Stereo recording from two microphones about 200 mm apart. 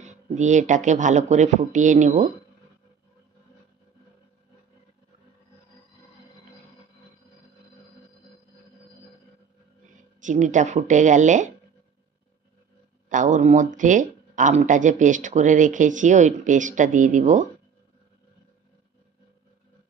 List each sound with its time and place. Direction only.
0.0 s speech: 35° right (ahead or behind)
9.9 s speech: 40° right (ahead or behind)
13.1 s speech: 40° right (ahead or behind)